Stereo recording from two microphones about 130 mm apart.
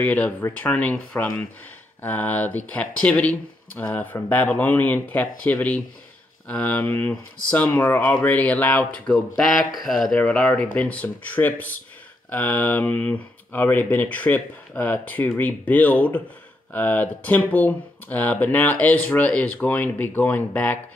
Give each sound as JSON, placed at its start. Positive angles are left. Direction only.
{"t": 0.0, "sound": "speech", "side_deg": 10}